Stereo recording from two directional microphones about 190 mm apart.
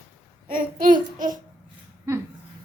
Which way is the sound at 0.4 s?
50° right (ahead or behind).